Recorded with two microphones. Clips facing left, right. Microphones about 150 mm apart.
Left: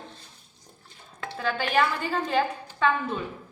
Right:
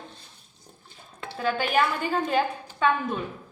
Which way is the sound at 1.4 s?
10° right (ahead or behind).